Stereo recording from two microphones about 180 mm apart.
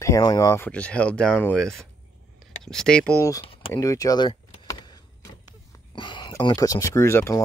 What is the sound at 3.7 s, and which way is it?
Speech, 20° left (ahead or behind).